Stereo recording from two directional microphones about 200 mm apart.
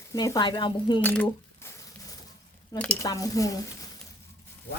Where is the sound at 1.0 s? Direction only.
10° left (ahead or behind).